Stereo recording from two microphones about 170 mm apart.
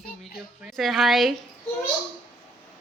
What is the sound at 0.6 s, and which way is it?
Speech, centre (ahead or behind).